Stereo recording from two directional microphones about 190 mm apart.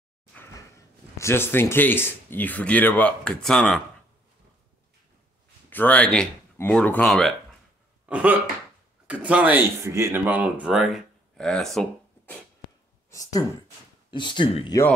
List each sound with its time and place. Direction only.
0.3 s speech: 15° left (ahead or behind)
5.7 s speech: 10° left (ahead or behind)
8.1 s throat clearing: 5° right (ahead or behind)
9.0 s speech: 5° right (ahead or behind)
13.1 s speech: 20° left (ahead or behind)